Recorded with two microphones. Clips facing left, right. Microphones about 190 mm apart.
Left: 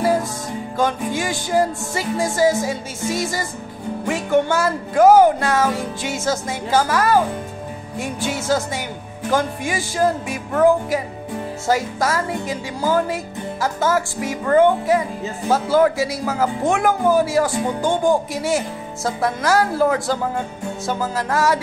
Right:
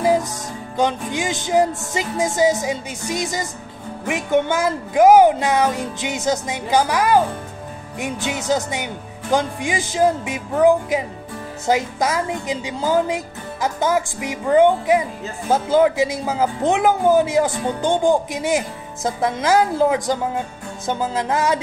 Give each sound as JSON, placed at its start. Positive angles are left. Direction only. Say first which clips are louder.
{"t": 0.0, "sound": "music", "louder": "right 1 dB", "side_deg": -15}
{"t": 0.7, "sound": "speech", "louder": "even", "side_deg": -20}